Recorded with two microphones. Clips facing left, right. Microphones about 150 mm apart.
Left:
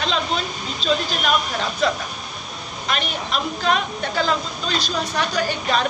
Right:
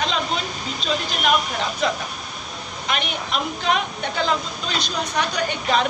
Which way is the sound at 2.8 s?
15° right (ahead or behind).